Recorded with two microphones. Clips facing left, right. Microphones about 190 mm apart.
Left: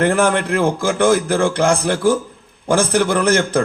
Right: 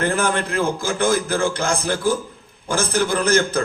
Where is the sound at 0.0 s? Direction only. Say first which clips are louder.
Left 5 dB; 70° left (ahead or behind).